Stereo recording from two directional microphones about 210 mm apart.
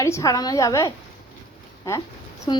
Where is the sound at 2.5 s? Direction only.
20° left (ahead or behind).